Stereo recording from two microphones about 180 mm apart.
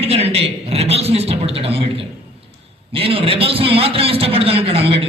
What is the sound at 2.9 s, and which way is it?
A man's voice, 30° right (ahead or behind).